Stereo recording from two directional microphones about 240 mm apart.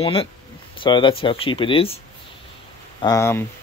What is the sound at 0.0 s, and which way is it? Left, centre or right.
Speech, left.